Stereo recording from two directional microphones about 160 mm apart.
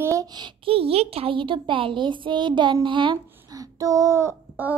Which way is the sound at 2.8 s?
30° right (ahead or behind).